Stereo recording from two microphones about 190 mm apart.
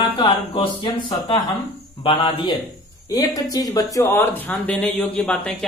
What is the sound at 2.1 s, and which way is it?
A woman's voice, 25° left (ahead or behind).